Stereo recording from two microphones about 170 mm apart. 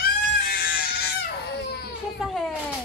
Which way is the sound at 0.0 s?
60° left (ahead or behind).